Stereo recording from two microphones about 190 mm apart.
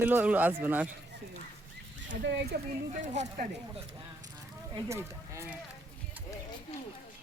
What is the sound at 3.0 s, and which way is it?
Speech, 40° right (ahead or behind).